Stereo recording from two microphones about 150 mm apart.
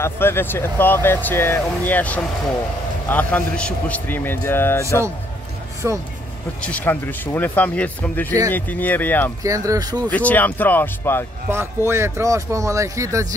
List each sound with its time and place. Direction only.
0.0 s speech: 15° left (ahead or behind)
5.8 s speech: 20° right (ahead or behind)
6.6 s speech: 10° left (ahead or behind)
9.4 s speech: 20° right (ahead or behind)
10.0 s speech: 10° left (ahead or behind)
11.5 s speech: 15° right (ahead or behind)